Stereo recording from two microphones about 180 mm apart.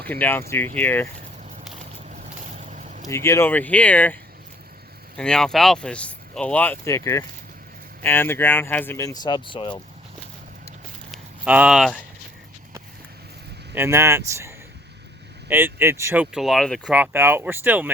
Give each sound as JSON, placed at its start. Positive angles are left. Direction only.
{"t": 0.1, "sound": "speech", "side_deg": 10}
{"t": 2.0, "sound": "vehicle", "side_deg": -45}
{"t": 3.1, "sound": "speech", "side_deg": 15}
{"t": 11.1, "sound": "a sound", "side_deg": -5}
{"t": 13.7, "sound": "speech", "side_deg": -15}